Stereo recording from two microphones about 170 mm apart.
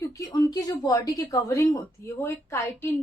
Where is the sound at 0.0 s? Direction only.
20° left (ahead or behind).